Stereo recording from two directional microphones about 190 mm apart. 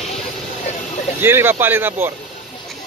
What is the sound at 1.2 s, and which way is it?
Speech, 10° right (ahead or behind).